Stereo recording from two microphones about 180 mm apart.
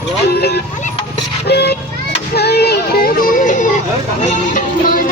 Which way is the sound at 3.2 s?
50° left (ahead or behind).